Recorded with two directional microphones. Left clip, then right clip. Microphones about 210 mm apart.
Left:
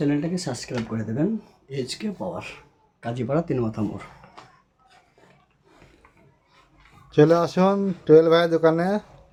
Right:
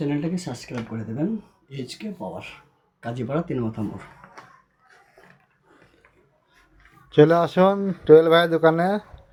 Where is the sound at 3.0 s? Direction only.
Centre (ahead or behind).